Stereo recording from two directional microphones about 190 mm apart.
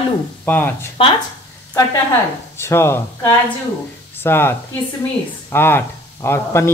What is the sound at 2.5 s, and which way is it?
Speech, 15° left (ahead or behind).